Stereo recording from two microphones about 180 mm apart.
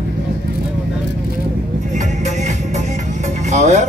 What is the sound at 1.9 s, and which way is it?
Music, 40° right (ahead or behind).